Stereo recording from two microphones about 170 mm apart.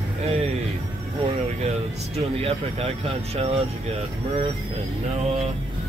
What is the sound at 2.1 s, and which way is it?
Speech, 35° right (ahead or behind).